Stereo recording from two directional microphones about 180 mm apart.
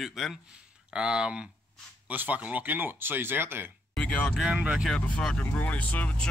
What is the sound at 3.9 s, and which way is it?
Speech, 5° left (ahead or behind).